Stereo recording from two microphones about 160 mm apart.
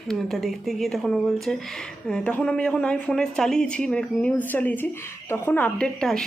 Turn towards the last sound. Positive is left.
turn(degrees=5)  # may be behind; listen again after turning